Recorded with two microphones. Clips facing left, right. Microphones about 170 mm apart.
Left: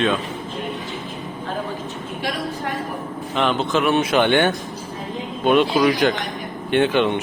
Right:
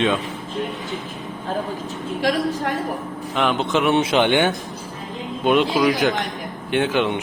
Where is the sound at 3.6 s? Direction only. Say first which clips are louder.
Right 2 dB; 20° right (ahead or behind).